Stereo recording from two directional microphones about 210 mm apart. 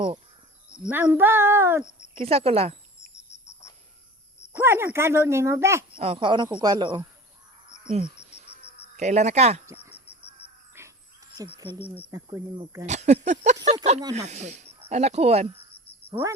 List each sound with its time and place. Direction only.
0.8 s speech: 5° right (ahead or behind)
2.1 s speech: 30° right (ahead or behind)
3.2 s cricket: 15° left (ahead or behind)
4.5 s speech: 10° right (ahead or behind)
6.0 s speech: 25° right (ahead or behind)
9.0 s speech: 30° right (ahead or behind)
9.6 s a sound: 15° right (ahead or behind)
9.9 s crow: 30° left (ahead or behind)
10.8 s a sound: 10° right (ahead or behind)
11.4 s speech: 10° left (ahead or behind)
12.8 s speech: 35° right (ahead or behind)
16.0 s speech: 10° right (ahead or behind)